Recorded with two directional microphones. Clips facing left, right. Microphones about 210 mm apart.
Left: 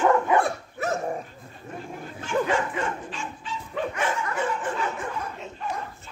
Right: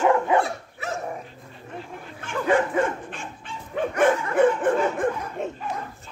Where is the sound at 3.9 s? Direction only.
55° right (ahead or behind).